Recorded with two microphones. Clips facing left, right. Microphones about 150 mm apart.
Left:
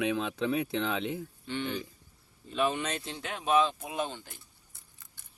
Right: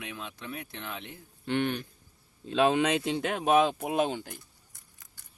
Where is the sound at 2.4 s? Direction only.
90° right; by 4.0 s 70° right (ahead or behind).